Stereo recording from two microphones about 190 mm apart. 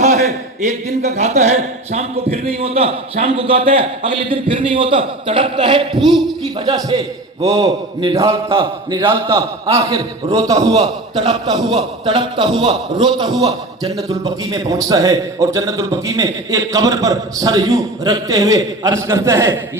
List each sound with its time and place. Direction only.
0.0 s a man's voice: 35° right (ahead or behind); by 19.5 s 15° right (ahead or behind)